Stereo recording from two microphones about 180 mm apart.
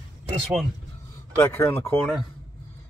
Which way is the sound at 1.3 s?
15° left (ahead or behind).